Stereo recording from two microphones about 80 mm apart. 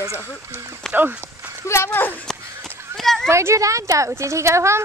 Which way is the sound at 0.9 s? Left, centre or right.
Centre.